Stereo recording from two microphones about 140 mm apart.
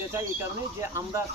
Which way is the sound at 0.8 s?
20° right (ahead or behind).